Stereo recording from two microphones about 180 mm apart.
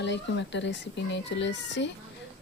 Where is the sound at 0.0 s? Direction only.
75° left (ahead or behind).